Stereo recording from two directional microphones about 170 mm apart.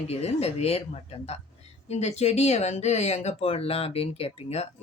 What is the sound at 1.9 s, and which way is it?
Speech, 40° left (ahead or behind).